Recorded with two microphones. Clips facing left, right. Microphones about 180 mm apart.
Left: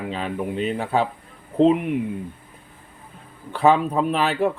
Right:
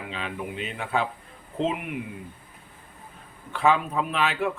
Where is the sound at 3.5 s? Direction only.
35° left (ahead or behind).